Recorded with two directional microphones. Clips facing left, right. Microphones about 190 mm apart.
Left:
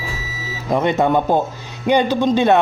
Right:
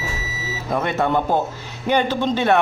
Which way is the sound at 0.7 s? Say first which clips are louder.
Left 4 dB; 15° left (ahead or behind).